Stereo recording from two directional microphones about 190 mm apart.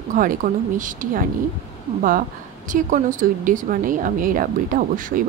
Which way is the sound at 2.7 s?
45° right (ahead or behind).